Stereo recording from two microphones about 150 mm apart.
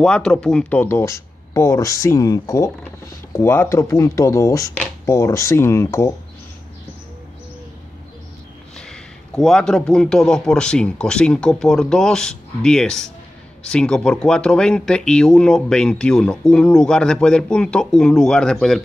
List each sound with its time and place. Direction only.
0.0 s speech: 5° left (ahead or behind)
8.7 s speech: 5° left (ahead or behind)